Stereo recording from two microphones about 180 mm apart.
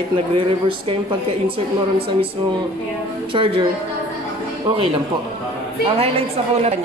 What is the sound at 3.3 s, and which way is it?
Speech, 30° right (ahead or behind).